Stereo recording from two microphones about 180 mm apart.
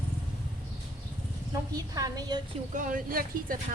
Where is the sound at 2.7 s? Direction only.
50° right (ahead or behind).